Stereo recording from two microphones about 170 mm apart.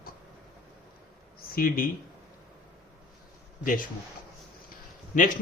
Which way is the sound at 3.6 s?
55° left (ahead or behind).